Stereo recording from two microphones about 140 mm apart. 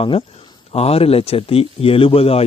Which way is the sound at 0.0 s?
40° left (ahead or behind).